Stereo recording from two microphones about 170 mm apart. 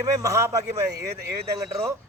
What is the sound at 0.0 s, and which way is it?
A man's voice, 20° right (ahead or behind).